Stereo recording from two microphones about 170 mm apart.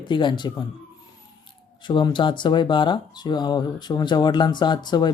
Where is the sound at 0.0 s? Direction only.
25° left (ahead or behind).